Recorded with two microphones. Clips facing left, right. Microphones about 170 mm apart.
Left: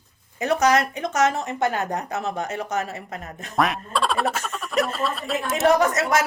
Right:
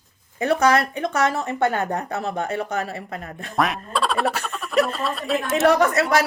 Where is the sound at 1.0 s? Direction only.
60° right (ahead or behind).